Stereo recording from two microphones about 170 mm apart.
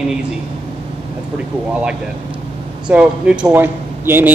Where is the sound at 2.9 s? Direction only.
5° right (ahead or behind).